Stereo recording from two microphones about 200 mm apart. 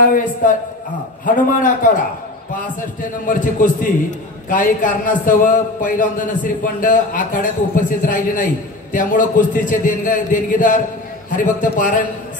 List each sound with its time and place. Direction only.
0.0 s a man's voice: 40° left (ahead or behind)
3.0 s a man's voice: 40° left (ahead or behind)